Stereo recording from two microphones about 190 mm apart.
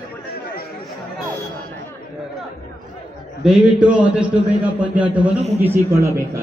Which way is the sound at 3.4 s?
5° right (ahead or behind).